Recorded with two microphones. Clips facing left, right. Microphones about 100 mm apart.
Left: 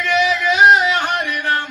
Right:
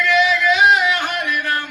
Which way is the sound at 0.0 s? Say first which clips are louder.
Right 1 dB; 25° left (ahead or behind).